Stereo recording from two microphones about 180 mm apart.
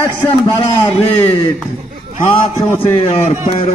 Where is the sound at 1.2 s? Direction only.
10° left (ahead or behind).